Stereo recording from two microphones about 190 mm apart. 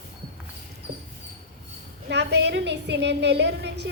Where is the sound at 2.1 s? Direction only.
65° right (ahead or behind).